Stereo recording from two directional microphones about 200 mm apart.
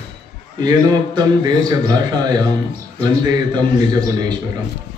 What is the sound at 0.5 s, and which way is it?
A man's voice, 20° right (ahead or behind).